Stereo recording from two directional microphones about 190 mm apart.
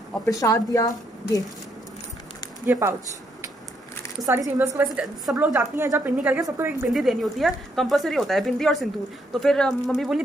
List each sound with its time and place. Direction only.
0.1 s speech: 15° left (ahead or behind)
2.6 s a woman's voice: 10° right (ahead or behind)
4.3 s a woman's voice: 15° right (ahead or behind)
6.9 s speech: centre (ahead or behind)